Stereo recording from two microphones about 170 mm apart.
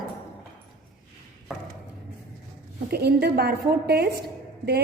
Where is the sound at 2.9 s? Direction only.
75° right (ahead or behind).